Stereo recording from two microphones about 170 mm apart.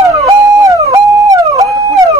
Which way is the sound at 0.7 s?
20° right (ahead or behind).